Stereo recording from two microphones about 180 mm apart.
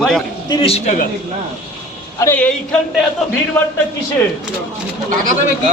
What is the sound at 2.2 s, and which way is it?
Speech, 10° left (ahead or behind).